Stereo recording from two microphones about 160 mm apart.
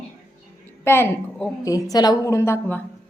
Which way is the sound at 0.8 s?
15° left (ahead or behind).